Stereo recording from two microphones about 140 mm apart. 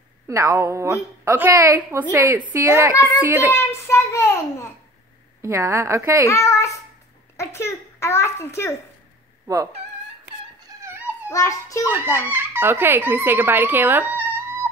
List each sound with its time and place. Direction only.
0.3 s a woman's voice: 20° right (ahead or behind)
3.5 s a child's voice: 15° left (ahead or behind)
5.4 s a woman's voice: 20° right (ahead or behind)
6.2 s a child's voice: 20° left (ahead or behind)
10.7 s dog: 25° right (ahead or behind)
11.2 s a child's voice: 20° left (ahead or behind)
11.9 s a child's voice: 15° right (ahead or behind)